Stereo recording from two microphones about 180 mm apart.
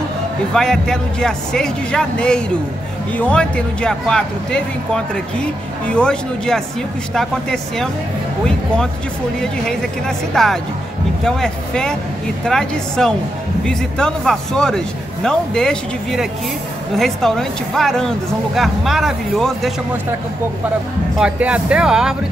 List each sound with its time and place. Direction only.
0.5 s speech: 5° left (ahead or behind)
9.4 s speech: 5° left (ahead or behind)
21.2 s speech: 5° right (ahead or behind)